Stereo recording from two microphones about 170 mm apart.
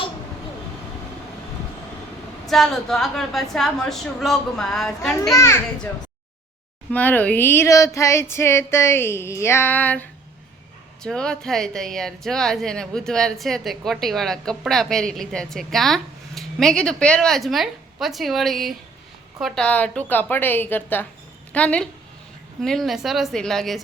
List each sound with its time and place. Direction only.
2.5 s speech: centre (ahead or behind)
5.3 s female singing: 15° left (ahead or behind)
6.9 s female singing: 10° left (ahead or behind)
11.0 s speech: 5° left (ahead or behind)
19.4 s female singing: centre (ahead or behind)
22.6 s speech: centre (ahead or behind)